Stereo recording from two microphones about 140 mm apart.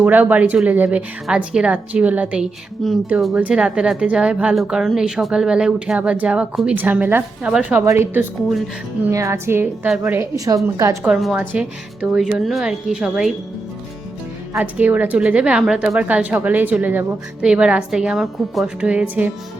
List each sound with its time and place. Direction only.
0.0 s a woman's voice: 10° right (ahead or behind)
8.4 s a woman's voice: centre (ahead or behind)
9.0 s a woman's voice: 20° right (ahead or behind)
11.0 s a woman's voice: 5° right (ahead or behind)
14.5 s a woman's voice: 10° right (ahead or behind)